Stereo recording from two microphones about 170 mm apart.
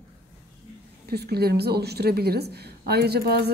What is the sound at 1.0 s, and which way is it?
A woman's voice, 65° right (ahead or behind).